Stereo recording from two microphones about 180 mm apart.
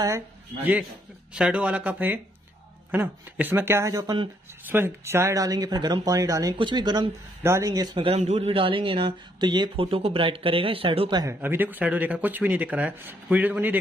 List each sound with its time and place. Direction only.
1.3 s speech: 5° right (ahead or behind); by 11.3 s 25° right (ahead or behind)
11.4 s speech: 10° right (ahead or behind)